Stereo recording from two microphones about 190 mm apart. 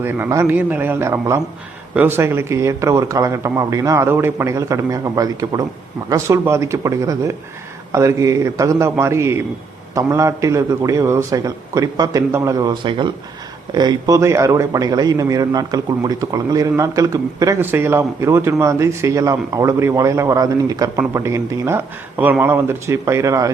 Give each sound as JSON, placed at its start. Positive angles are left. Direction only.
{"t": 0.0, "sound": "a man's voice", "side_deg": -15}